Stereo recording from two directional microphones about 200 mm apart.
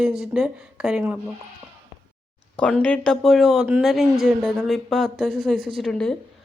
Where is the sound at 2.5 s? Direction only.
5° left (ahead or behind).